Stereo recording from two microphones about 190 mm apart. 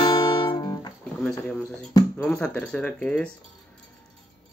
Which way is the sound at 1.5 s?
5° left (ahead or behind).